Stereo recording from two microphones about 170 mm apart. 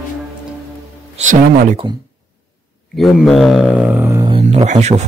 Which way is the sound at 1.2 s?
40° right (ahead or behind).